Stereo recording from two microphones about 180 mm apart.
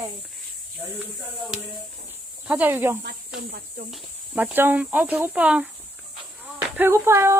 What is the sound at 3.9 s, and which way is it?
Speech, 5° right (ahead or behind).